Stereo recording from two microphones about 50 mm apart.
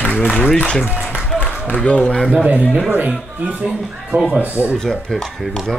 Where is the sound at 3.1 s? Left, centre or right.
Centre.